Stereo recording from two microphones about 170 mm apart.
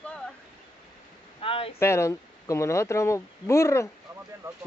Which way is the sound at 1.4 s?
35° left (ahead or behind).